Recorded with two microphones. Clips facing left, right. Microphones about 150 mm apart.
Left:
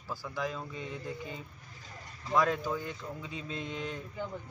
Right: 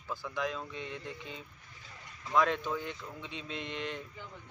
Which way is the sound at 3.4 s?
85° right.